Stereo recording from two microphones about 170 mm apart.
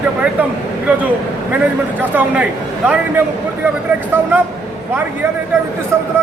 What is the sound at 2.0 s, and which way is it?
A man's voice, 10° right (ahead or behind).